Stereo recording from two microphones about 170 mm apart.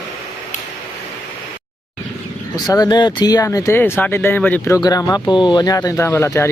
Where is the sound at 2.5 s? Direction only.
20° left (ahead or behind).